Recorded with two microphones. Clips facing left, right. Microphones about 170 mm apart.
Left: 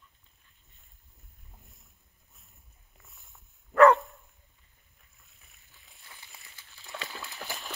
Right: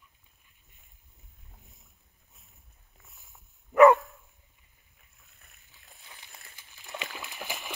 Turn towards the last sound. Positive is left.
turn(degrees=-15)  # may be behind; listen again after turning